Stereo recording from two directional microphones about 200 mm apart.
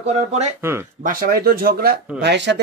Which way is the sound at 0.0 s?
35° right (ahead or behind).